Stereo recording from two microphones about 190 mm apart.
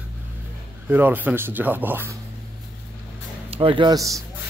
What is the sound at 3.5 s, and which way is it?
Speech, 25° right (ahead or behind).